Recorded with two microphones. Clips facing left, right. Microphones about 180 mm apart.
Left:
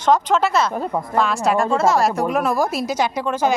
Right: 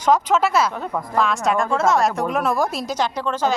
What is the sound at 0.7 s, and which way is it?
Speech, 30° left (ahead or behind).